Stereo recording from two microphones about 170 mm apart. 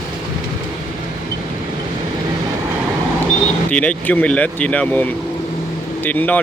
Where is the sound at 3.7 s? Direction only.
5° left (ahead or behind).